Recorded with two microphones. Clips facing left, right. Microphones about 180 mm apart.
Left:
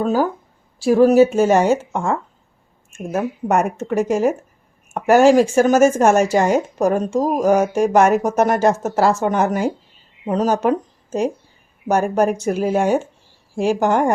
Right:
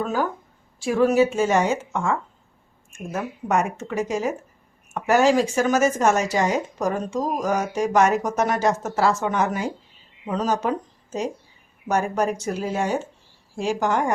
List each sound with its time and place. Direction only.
0.0 s speech: 35° left (ahead or behind)